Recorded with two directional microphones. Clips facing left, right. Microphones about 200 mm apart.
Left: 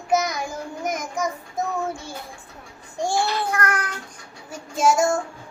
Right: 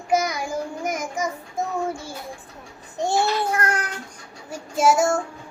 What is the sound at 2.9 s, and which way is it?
Child singing, 20° right (ahead or behind).